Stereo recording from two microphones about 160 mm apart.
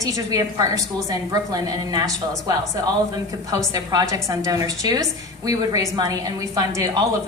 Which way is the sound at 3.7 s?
25° right (ahead or behind).